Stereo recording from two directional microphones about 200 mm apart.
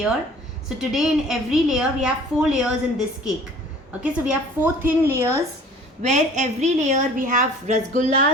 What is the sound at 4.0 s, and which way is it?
A woman's voice, 10° right (ahead or behind).